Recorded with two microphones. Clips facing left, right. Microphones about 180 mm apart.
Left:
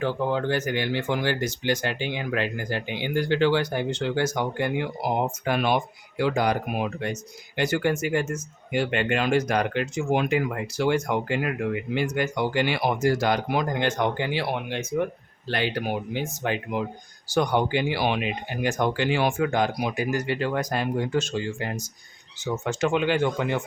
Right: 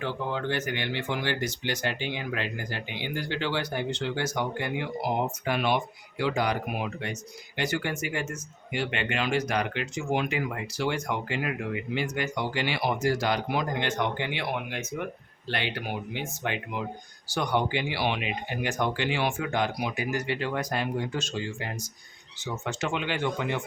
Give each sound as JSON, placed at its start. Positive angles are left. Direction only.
{"t": 0.0, "sound": "speech", "side_deg": 40}
{"t": 15.4, "sound": "speech", "side_deg": 40}